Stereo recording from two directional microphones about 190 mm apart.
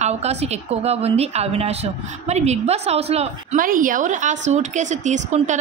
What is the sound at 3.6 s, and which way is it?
A woman's voice, 45° right (ahead or behind).